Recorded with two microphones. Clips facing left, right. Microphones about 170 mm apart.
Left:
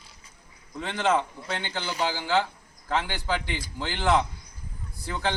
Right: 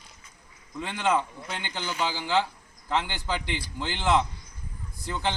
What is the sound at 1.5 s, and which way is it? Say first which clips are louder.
Speech: left 4 dB; 15° right (ahead or behind).